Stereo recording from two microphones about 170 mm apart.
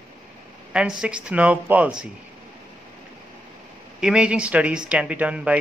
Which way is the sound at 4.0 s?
5° right (ahead or behind).